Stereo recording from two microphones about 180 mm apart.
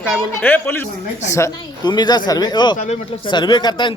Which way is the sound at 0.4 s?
10° left (ahead or behind).